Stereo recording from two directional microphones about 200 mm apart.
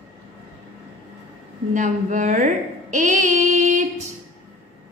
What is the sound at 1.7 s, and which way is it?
A woman's voice, 40° right (ahead or behind).